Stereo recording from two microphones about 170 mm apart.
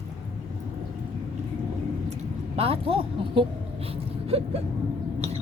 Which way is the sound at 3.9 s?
35° right (ahead or behind).